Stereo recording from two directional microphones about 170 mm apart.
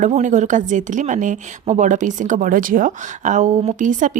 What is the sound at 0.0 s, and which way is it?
Speech, 45° right (ahead or behind).